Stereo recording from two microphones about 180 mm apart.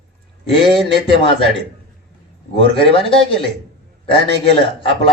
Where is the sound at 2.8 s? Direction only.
30° left (ahead or behind).